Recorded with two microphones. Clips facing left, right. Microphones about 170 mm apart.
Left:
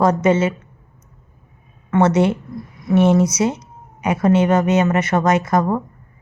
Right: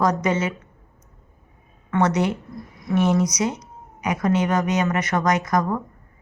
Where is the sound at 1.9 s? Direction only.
25° left (ahead or behind).